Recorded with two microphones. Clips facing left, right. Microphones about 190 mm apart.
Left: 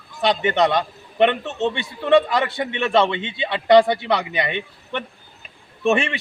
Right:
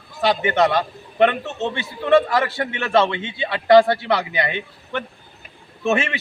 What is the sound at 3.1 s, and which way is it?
Speech, 20° left (ahead or behind).